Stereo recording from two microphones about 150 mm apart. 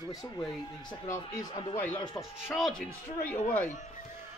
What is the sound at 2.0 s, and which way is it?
Speech, 30° left (ahead or behind).